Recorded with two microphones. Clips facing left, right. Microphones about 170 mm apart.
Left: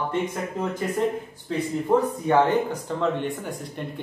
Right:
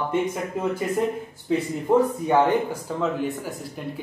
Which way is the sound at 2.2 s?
5° right (ahead or behind).